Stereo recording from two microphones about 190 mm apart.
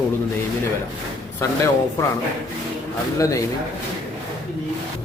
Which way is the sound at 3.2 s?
15° left (ahead or behind).